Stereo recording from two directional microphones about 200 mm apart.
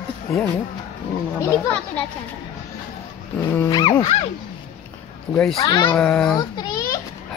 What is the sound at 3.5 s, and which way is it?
Dog, 20° left (ahead or behind).